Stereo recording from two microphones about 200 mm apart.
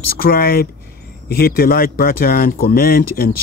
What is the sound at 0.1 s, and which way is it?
Speech, 50° left (ahead or behind).